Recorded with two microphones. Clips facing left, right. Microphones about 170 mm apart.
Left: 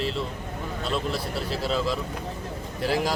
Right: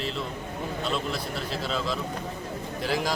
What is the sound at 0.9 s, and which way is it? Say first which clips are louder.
A man's voice: left 2 dB; 5° left (ahead or behind).